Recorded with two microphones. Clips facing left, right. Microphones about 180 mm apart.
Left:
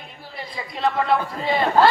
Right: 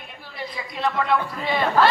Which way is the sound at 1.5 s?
25° left (ahead or behind).